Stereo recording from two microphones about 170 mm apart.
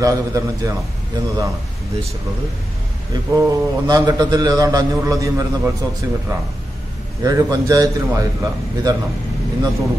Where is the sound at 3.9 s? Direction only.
25° right (ahead or behind).